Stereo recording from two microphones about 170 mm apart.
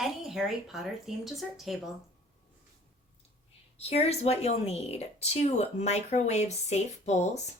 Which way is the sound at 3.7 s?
35° left (ahead or behind).